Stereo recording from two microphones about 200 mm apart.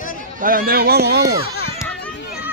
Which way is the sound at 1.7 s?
10° left (ahead or behind).